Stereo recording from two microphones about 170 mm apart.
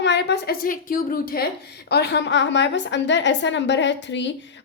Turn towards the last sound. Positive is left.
turn(degrees=90)